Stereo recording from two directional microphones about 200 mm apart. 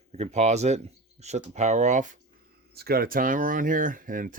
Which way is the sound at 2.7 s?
50° right (ahead or behind).